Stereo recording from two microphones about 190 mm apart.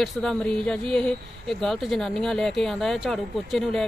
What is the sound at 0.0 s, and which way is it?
Speech, 5° left (ahead or behind).